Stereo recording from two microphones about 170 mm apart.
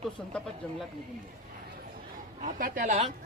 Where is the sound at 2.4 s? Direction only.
50° right (ahead or behind).